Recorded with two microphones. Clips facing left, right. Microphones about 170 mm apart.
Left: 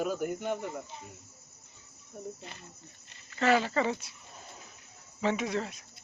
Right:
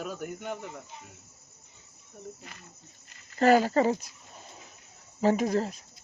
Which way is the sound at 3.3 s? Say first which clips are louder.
Right 5 dB; 40° right (ahead or behind).